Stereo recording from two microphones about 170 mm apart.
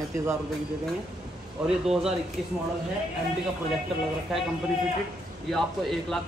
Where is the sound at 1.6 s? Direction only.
5° right (ahead or behind).